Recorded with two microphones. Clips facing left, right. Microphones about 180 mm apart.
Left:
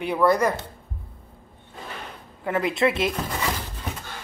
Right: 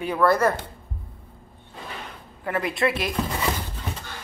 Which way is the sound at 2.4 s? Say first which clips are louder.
Left 2 dB; 20° left (ahead or behind).